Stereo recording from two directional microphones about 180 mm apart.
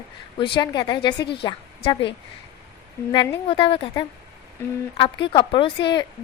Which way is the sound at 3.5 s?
30° left (ahead or behind).